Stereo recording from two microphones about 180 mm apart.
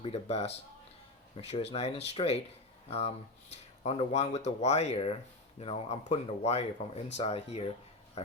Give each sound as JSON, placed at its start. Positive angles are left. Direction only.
{"t": 0.0, "sound": "speech", "side_deg": 35}
{"t": 3.5, "sound": "speech", "side_deg": 35}